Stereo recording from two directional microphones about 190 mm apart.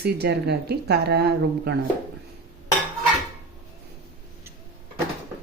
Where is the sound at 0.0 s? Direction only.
60° right (ahead or behind).